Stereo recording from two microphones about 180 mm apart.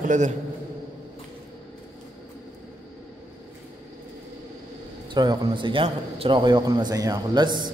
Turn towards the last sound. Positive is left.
turn(degrees=-25)  # may be behind; listen again after turning